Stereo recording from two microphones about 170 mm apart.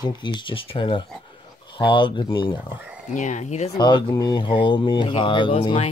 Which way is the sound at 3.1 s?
45° left (ahead or behind).